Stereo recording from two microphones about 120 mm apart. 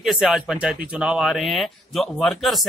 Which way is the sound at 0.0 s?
5° right (ahead or behind).